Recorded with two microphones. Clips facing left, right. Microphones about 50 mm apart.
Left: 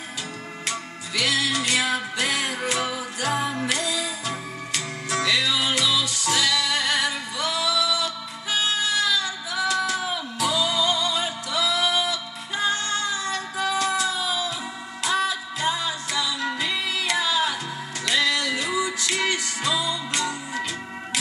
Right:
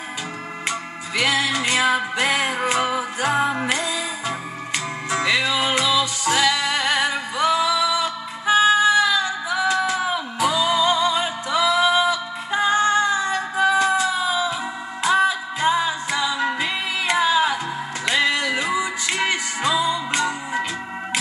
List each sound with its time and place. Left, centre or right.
0.7 s music: right